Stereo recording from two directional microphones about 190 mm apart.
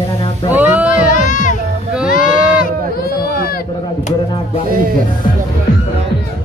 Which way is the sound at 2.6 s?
50° left (ahead or behind).